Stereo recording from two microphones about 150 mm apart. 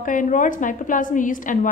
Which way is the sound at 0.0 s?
60° left (ahead or behind).